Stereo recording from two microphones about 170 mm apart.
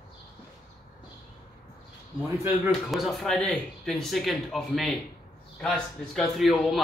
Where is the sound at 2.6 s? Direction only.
Centre (ahead or behind).